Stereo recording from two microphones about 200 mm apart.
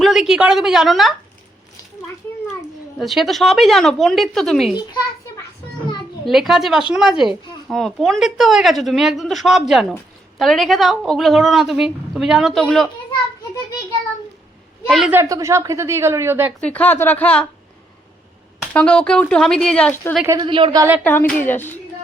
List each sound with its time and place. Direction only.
0.0 s speech: centre (ahead or behind)
3.0 s speech: centre (ahead or behind)
6.2 s speech: centre (ahead or behind)
14.8 s a woman's voice: centre (ahead or behind)
15.1 s speech: 15° right (ahead or behind)
16.6 s speech: 5° left (ahead or behind)
18.7 s speech: 5° left (ahead or behind)
20.2 s a woman's voice: 20° right (ahead or behind)
21.0 s speech: 10° left (ahead or behind)